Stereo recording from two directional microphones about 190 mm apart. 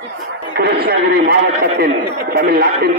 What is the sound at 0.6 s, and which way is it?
A man's voice, 60° right (ahead or behind).